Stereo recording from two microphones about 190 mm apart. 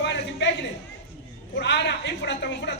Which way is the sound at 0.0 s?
65° left (ahead or behind).